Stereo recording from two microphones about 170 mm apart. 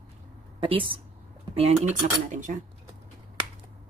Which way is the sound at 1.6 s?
45° right (ahead or behind).